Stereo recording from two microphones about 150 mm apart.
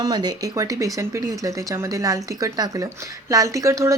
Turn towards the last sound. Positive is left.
turn(degrees=-20)  # may be behind; listen again after turning